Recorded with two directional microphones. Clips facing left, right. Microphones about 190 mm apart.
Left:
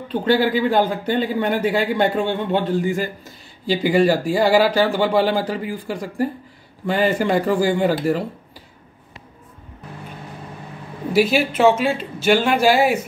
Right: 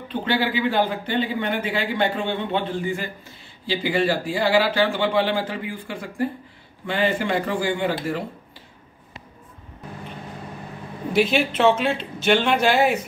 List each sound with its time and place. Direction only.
0.1 s a man's voice: 45° left (ahead or behind)
11.1 s speech: 5° left (ahead or behind)